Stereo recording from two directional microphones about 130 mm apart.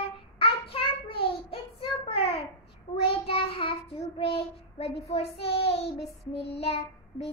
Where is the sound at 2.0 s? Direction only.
45° left (ahead or behind).